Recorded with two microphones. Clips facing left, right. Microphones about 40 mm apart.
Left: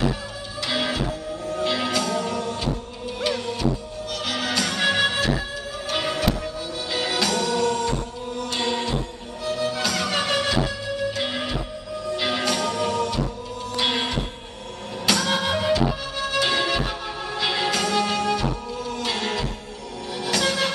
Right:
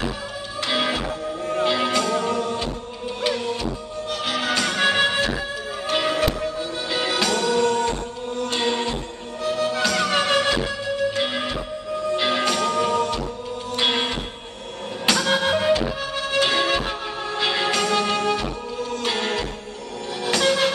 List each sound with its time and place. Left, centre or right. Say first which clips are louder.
0.7 s music: right 2 dB; centre
1.0 s music: right 2 dB; right
1.7 s music: right 2 dB; centre